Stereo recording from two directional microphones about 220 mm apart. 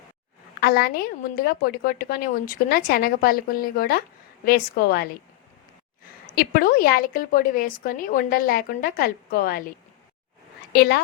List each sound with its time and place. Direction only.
0.6 s a woman's voice: 45° left (ahead or behind)
6.3 s a woman's voice: 45° left (ahead or behind)
10.7 s a woman's voice: 45° left (ahead or behind)